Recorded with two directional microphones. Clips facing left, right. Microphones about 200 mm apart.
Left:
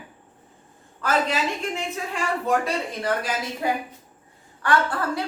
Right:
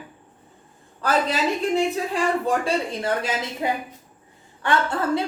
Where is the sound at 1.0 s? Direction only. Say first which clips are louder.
Right 2 dB; 35° right (ahead or behind).